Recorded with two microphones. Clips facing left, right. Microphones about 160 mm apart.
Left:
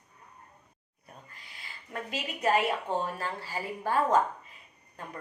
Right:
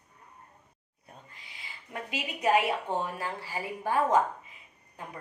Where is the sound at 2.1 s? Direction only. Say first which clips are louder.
Right 1 dB; 10° right (ahead or behind).